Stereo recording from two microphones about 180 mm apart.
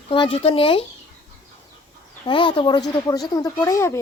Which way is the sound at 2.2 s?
30° left (ahead or behind).